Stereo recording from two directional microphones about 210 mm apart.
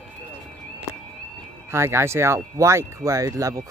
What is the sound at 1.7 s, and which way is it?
Speech, 10° right (ahead or behind).